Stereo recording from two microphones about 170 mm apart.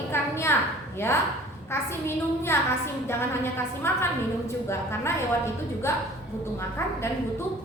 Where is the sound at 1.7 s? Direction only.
15° left (ahead or behind).